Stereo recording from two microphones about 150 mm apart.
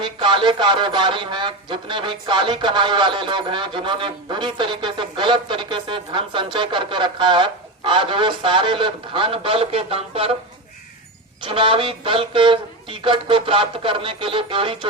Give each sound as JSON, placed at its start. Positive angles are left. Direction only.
{"t": 0.0, "sound": "speech", "side_deg": -30}
{"t": 11.4, "sound": "speech", "side_deg": -35}